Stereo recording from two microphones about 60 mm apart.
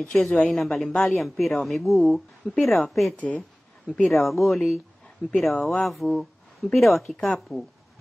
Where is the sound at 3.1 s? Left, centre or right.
Left.